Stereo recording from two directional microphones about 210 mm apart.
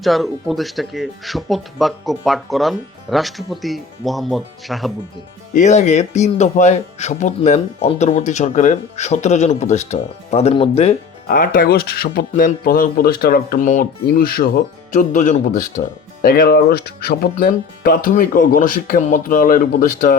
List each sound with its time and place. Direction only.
0.0 s speech: centre (ahead or behind)
5.5 s speech: 35° left (ahead or behind)
11.3 s speech: 45° left (ahead or behind)